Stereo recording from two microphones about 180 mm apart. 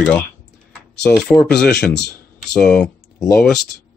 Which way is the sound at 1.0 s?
5° left (ahead or behind).